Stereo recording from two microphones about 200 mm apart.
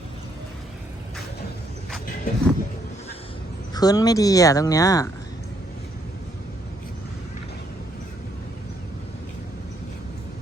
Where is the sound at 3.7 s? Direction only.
20° left (ahead or behind).